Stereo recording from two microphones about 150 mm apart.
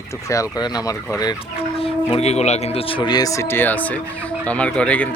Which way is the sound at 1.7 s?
40° left (ahead or behind).